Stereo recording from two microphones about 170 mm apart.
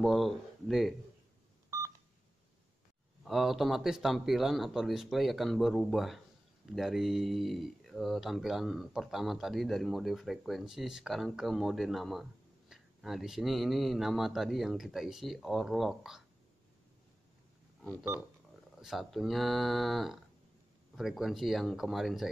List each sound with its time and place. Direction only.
0.0 s speech: centre (ahead or behind)
1.7 s telephone dialing: 20° right (ahead or behind)
3.3 s speech: centre (ahead or behind)
18.8 s speech: centre (ahead or behind)